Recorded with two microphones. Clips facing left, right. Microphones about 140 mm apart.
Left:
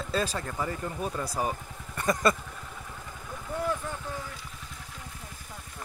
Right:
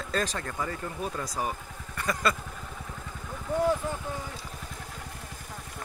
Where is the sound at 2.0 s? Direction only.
20° left (ahead or behind).